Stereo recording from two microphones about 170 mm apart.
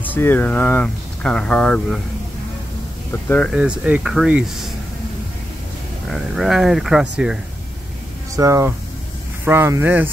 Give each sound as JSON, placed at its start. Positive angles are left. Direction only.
{"t": 0.0, "sound": "speech", "side_deg": 10}
{"t": 3.1, "sound": "speech", "side_deg": 10}
{"t": 3.5, "sound": "speech", "side_deg": -5}
{"t": 6.0, "sound": "speech", "side_deg": 0}
{"t": 8.4, "sound": "speech", "side_deg": -15}